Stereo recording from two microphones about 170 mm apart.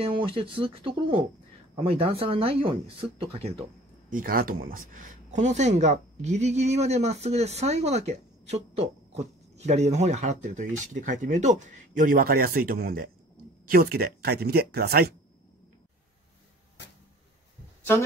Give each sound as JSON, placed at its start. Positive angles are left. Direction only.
{"t": 0.0, "sound": "speech", "side_deg": -30}
{"t": 4.1, "sound": "speech", "side_deg": -55}